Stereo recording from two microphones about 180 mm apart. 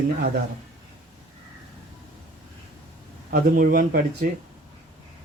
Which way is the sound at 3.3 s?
55° right (ahead or behind).